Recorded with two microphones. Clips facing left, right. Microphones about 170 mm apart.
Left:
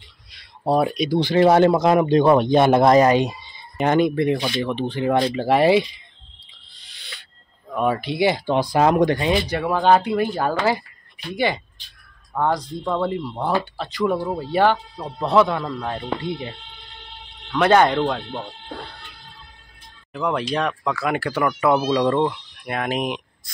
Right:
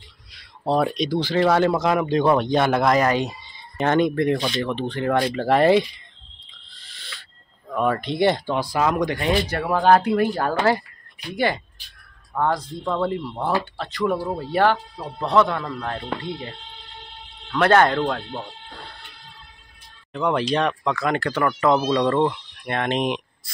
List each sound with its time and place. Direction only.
0.3 s a sound: 10° left (ahead or behind)
1.1 s speech: 20° left (ahead or behind)
6.7 s owl: centre (ahead or behind)
7.7 s speech: 5° left (ahead or behind)
8.5 s speech: 20° left (ahead or behind)
9.7 s speech: centre (ahead or behind)
11.2 s speech: 15° left (ahead or behind)
12.3 s speech: 5° left (ahead or behind)
15.1 s speech: 10° left (ahead or behind)
20.1 s speech: centre (ahead or behind)